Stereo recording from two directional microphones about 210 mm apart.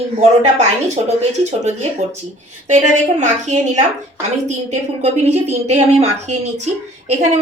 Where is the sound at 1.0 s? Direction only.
30° right (ahead or behind).